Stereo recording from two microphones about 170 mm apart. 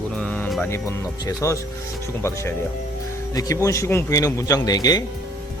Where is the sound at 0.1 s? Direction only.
5° left (ahead or behind).